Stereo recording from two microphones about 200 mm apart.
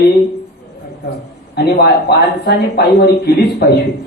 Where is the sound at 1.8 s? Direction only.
55° left (ahead or behind).